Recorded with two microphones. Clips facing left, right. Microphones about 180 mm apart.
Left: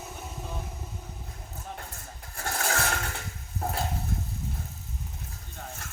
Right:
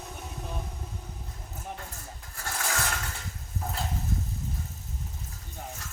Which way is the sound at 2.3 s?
45° left (ahead or behind).